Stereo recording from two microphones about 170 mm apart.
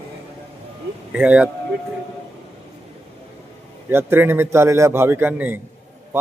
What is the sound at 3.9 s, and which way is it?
A man's voice, 15° right (ahead or behind).